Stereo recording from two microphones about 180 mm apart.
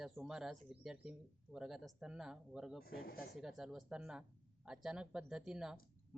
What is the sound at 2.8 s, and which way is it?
Speech, 55° left (ahead or behind).